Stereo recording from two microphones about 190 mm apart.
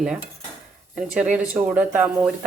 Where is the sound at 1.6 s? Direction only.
5° right (ahead or behind).